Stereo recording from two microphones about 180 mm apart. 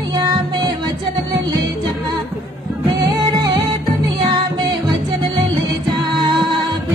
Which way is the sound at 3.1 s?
20° right (ahead or behind).